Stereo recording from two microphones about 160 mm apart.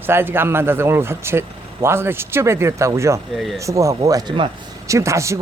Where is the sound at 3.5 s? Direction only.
20° right (ahead or behind).